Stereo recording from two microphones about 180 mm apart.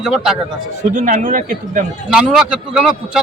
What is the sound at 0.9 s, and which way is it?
Speech, 45° right (ahead or behind).